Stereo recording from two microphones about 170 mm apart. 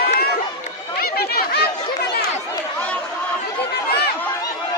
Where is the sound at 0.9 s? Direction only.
65° left (ahead or behind).